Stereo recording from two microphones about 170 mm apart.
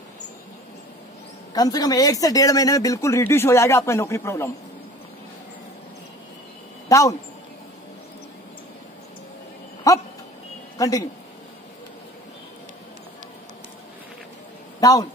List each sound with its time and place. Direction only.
1.5 s speech: 20° left (ahead or behind)
6.9 s a man's voice: 20° left (ahead or behind)
9.9 s speech: 20° left (ahead or behind)
14.8 s a man's voice: 20° left (ahead or behind)